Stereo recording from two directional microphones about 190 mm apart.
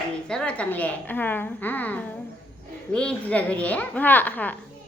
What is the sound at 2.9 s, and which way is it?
A woman's voice, 5° left (ahead or behind).